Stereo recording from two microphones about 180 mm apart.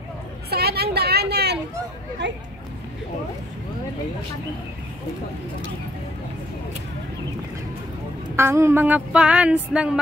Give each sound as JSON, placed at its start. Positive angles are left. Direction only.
{"t": 0.5, "sound": "vehicle", "side_deg": -60}
{"t": 2.2, "sound": "speech", "side_deg": -75}
{"t": 8.4, "sound": "a sound", "side_deg": -15}